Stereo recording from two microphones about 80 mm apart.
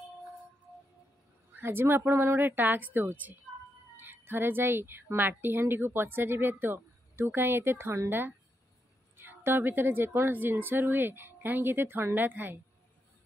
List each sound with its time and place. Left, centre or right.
1.5 s a woman's voice: right